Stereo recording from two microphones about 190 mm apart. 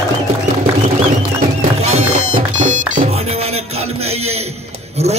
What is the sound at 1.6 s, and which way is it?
Music, 35° right (ahead or behind).